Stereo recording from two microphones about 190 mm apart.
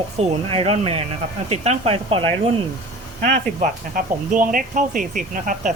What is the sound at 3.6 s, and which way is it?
Speech, 45° right (ahead or behind).